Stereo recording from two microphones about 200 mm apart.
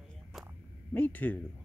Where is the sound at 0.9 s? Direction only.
10° left (ahead or behind).